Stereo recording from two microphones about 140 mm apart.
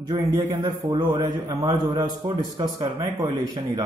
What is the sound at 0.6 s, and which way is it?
Speech, 35° right (ahead or behind).